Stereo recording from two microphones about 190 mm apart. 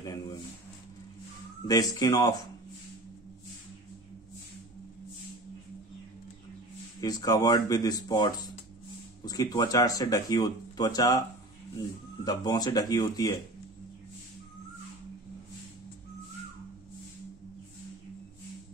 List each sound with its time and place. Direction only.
0.0 s a sound: 20° left (ahead or behind)
1.7 s speech: 20° left (ahead or behind)
7.0 s speech: 20° left (ahead or behind)
12.3 s speech: 20° left (ahead or behind)